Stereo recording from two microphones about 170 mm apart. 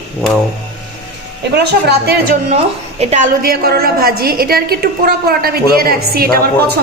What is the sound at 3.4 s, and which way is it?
A woman's voice, 60° right (ahead or behind).